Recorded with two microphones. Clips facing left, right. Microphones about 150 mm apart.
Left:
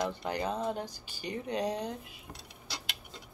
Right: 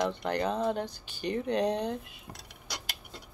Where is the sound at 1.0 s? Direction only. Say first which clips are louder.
Right 6 dB; 60° right (ahead or behind).